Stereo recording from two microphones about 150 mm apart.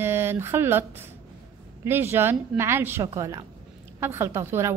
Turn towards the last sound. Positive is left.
turn(degrees=-20)  # may be behind; listen again after turning